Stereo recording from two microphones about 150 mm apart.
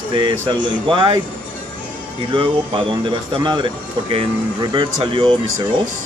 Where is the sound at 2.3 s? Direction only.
35° right (ahead or behind).